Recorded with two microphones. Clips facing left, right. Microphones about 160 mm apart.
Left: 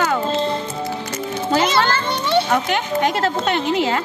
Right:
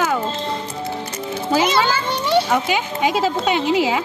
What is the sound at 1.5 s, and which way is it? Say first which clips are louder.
A child's voice: even; 10° right (ahead or behind).